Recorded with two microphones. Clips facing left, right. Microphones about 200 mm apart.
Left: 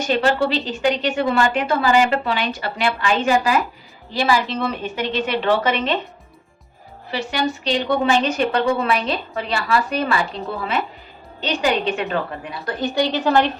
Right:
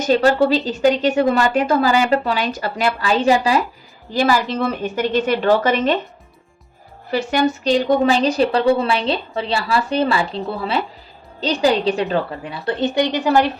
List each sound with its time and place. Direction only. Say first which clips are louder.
0.0 s a woman's voice: right 4 dB; 40° right (ahead or behind)
4.1 s a woman's voice: right 2 dB; 45° right (ahead or behind)
7.1 s a woman's voice: right 5 dB; 50° right (ahead or behind); by 13.5 s 10° right (ahead or behind)